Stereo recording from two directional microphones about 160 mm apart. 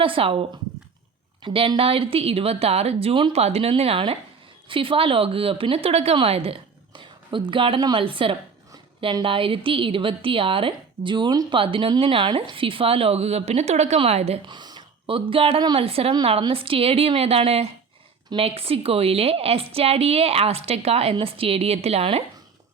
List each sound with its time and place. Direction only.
0.0 s a woman's voice: 35° right (ahead or behind)
14.4 s a woman's voice: 25° right (ahead or behind)